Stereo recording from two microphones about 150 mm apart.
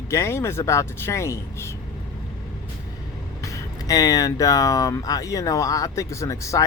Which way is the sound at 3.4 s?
20° left (ahead or behind).